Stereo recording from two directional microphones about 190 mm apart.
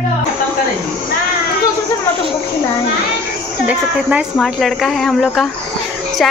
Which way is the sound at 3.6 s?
5° right (ahead or behind).